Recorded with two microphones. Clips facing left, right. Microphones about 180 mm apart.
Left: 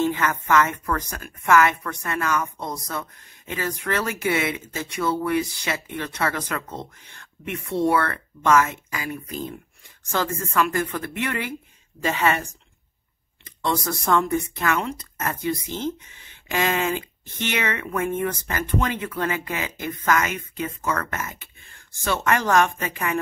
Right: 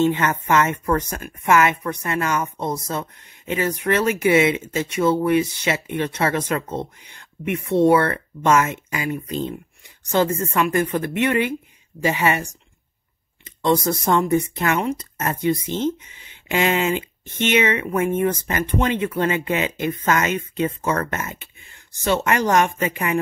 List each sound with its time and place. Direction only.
0.0 s speech: 25° right (ahead or behind)